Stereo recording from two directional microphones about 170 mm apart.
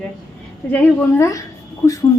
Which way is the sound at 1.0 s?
15° left (ahead or behind).